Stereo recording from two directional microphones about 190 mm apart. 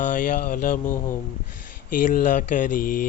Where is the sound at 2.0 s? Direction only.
40° left (ahead or behind).